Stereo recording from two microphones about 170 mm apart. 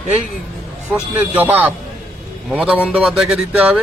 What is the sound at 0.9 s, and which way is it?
A man's voice, 10° right (ahead or behind).